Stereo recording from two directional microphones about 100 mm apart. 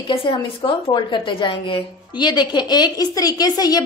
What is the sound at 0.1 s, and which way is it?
A woman's voice, 65° left (ahead or behind).